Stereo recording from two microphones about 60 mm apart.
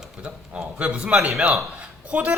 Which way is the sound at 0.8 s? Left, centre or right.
Centre.